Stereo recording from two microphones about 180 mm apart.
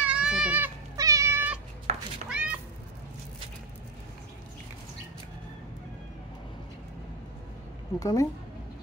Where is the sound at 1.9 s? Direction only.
35° right (ahead or behind).